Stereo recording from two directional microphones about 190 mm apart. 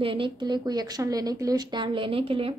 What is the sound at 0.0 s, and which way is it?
Speech, 25° right (ahead or behind).